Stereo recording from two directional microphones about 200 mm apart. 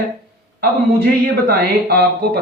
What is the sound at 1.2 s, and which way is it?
Speech, 50° right (ahead or behind).